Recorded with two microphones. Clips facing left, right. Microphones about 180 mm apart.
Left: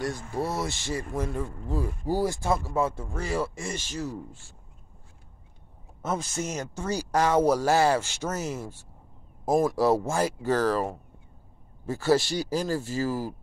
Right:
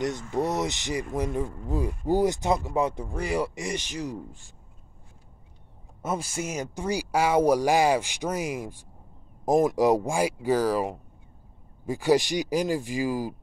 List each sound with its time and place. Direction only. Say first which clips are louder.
0.0 s speech: right 3 dB; 20° right (ahead or behind)
6.0 s speech: even; 10° right (ahead or behind)